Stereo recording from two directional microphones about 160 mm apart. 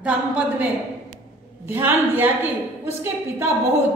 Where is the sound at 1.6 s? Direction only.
10° right (ahead or behind).